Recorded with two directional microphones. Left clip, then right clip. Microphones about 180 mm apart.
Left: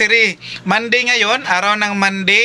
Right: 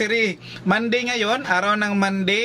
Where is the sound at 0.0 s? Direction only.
5° left (ahead or behind).